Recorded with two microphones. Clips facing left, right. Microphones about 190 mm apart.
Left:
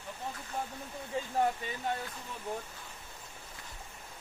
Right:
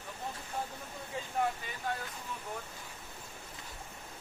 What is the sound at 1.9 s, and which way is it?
Speech, 25° left (ahead or behind).